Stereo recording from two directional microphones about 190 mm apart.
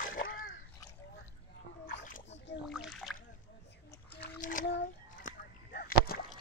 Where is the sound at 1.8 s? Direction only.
45° left (ahead or behind).